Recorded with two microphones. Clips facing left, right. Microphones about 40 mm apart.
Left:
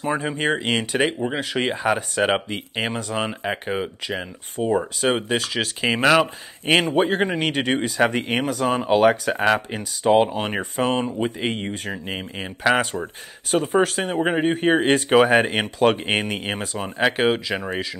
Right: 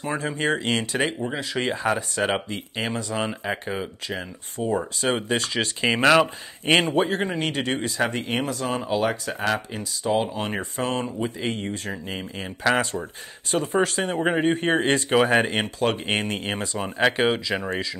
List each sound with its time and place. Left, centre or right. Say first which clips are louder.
0.0 s speech: left 3 dB; centre
5.1 s speech: left 2 dB; centre
7.0 s speech: left 3 dB; left
8.8 s speech: left 9 dB; left
9.4 s speech: left 5 dB; left
10.3 s speech: left 3 dB; centre